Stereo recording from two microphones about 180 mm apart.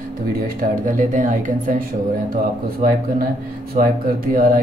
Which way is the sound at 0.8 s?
45° right (ahead or behind).